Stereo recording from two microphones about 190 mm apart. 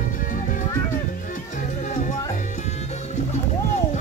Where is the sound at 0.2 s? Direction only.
45° left (ahead or behind).